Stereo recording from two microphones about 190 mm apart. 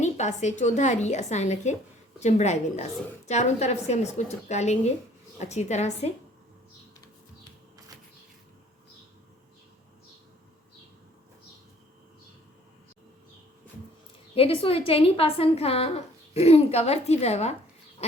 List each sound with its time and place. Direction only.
0.0 s a woman's voice: 40° left (ahead or behind)
14.3 s a woman's voice: 30° left (ahead or behind)